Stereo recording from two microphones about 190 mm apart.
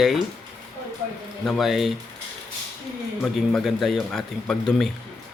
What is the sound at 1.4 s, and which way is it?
Speech, centre (ahead or behind).